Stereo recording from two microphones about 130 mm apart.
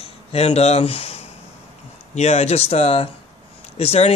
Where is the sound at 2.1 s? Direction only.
55° left (ahead or behind).